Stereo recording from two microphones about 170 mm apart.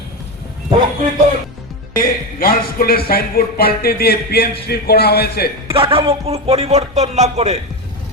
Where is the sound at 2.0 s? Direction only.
60° left (ahead or behind).